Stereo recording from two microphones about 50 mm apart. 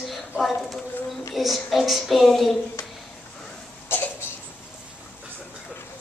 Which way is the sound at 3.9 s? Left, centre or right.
Left.